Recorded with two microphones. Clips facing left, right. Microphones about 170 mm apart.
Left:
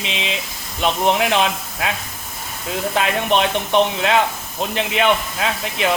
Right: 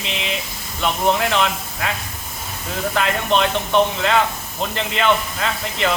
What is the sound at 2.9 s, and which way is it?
Speech, 20° left (ahead or behind).